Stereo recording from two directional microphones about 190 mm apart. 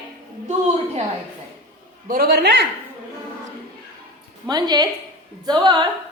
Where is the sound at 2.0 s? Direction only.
50° right (ahead or behind).